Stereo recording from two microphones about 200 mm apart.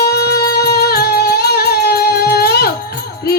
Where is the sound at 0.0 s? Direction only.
55° left (ahead or behind).